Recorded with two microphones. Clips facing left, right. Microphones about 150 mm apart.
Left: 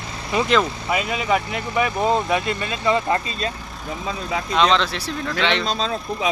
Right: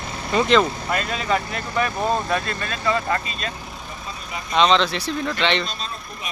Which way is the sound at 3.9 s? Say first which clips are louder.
Left 10 dB; 90° left.